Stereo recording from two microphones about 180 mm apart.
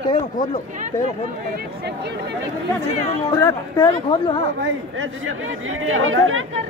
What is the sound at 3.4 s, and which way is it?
Speech, 25° left (ahead or behind).